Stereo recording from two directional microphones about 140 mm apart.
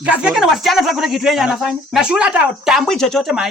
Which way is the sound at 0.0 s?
10° right (ahead or behind).